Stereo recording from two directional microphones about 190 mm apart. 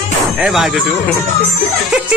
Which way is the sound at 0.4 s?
Centre (ahead or behind).